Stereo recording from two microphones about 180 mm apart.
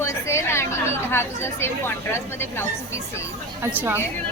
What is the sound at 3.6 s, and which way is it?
Speech, 10° right (ahead or behind).